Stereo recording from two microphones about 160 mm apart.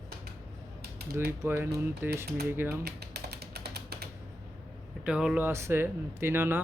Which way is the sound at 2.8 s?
90° right.